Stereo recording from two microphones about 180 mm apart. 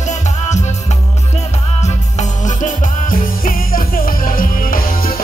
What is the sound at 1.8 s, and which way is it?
Music, 40° left (ahead or behind).